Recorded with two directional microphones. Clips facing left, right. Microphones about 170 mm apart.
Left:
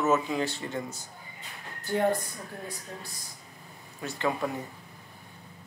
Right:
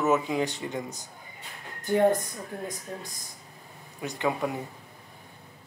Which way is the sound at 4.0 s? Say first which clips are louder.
Right 1 dB; 15° right (ahead or behind).